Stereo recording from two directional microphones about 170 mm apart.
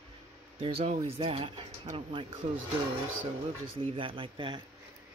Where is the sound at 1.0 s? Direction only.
35° right (ahead or behind).